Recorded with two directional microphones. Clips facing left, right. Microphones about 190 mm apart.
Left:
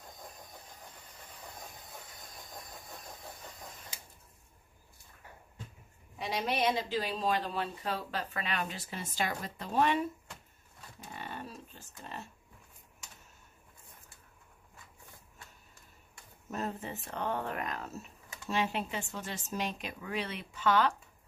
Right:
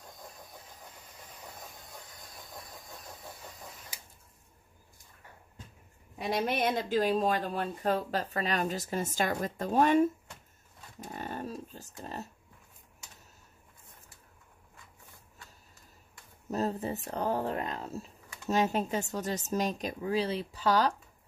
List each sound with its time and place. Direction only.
6.1 s speech: 50° right (ahead or behind)
11.0 s a sound: 45° right (ahead or behind)
16.4 s speech: 35° right (ahead or behind)
18.5 s speech: 40° right (ahead or behind)